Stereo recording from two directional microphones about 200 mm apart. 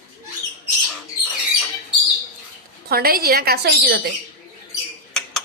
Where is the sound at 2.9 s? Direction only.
50° right (ahead or behind).